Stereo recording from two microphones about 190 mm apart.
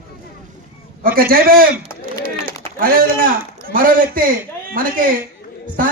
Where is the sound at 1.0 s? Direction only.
50° right (ahead or behind).